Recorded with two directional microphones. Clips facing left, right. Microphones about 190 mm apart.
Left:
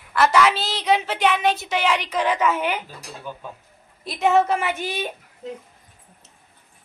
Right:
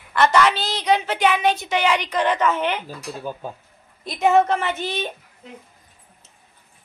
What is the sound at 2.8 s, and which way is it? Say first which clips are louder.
Speech: right 5 dB; 35° right (ahead or behind).